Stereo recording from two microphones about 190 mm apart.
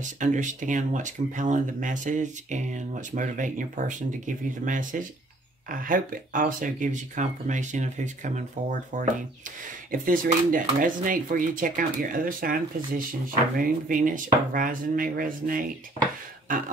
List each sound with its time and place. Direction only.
0.0 s speech: 40° right (ahead or behind)
16.4 s beatboxing: 45° right (ahead or behind)